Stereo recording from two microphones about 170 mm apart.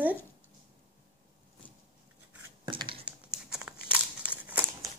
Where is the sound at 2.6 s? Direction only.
30° right (ahead or behind).